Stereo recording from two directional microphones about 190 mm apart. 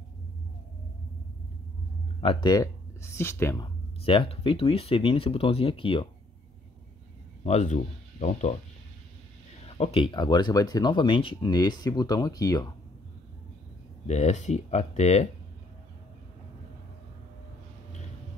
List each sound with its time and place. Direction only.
2.2 s speech: 20° left (ahead or behind)
7.4 s speech: 40° left (ahead or behind)
9.7 s speech: 30° left (ahead or behind)
14.0 s speech: 35° left (ahead or behind)